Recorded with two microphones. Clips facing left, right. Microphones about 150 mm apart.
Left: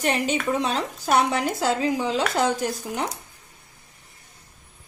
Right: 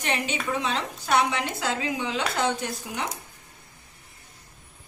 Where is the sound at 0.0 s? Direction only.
40° left (ahead or behind).